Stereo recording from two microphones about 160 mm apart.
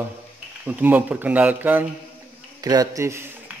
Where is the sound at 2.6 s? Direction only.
25° right (ahead or behind).